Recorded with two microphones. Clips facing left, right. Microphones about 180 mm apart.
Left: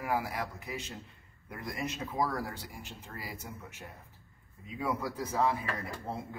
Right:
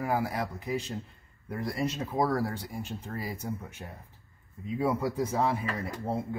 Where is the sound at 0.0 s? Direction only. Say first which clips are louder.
Right 4 dB; 35° right (ahead or behind).